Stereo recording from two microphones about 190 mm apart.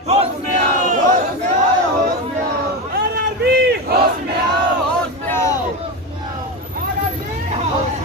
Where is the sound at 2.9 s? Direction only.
60° right (ahead or behind).